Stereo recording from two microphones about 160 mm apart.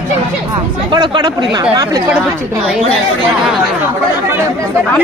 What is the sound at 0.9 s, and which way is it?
Speech, 30° right (ahead or behind).